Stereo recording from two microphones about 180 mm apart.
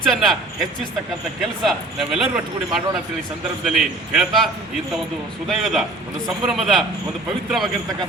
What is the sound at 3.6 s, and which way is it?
Speech, centre (ahead or behind).